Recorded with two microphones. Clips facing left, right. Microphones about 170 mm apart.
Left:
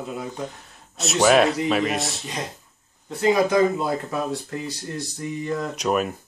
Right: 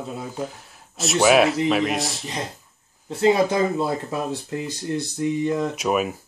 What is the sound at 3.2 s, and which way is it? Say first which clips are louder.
Speech: even; 30° right (ahead or behind).